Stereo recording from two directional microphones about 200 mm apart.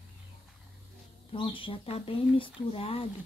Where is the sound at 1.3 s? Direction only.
25° left (ahead or behind).